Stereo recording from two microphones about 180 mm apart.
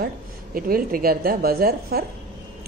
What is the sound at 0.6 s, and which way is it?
A woman's voice, 55° right (ahead or behind).